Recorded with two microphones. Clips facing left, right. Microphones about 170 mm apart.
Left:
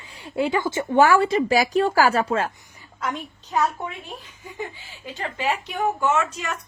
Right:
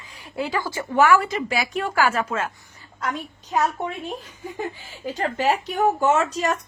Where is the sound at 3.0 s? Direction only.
Centre (ahead or behind).